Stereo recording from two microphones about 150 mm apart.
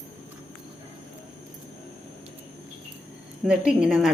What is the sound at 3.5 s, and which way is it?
Speech, 5° right (ahead or behind).